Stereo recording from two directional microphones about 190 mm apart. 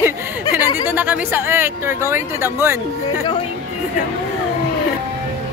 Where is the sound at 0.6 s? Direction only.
20° left (ahead or behind).